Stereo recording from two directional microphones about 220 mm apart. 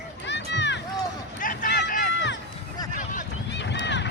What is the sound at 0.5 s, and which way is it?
Run, 55° left (ahead or behind).